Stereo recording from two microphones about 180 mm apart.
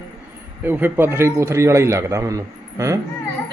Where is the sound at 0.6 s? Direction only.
10° right (ahead or behind).